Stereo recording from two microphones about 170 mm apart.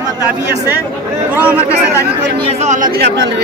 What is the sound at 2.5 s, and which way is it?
Speech, 40° right (ahead or behind).